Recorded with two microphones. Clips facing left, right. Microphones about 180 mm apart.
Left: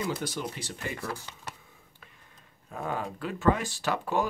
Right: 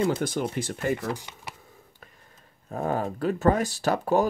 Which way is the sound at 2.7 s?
40° right (ahead or behind).